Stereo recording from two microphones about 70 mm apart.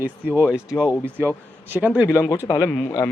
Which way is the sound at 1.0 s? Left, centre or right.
Right.